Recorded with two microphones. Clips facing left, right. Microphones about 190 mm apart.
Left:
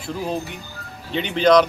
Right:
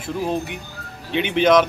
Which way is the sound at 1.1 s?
65° right (ahead or behind).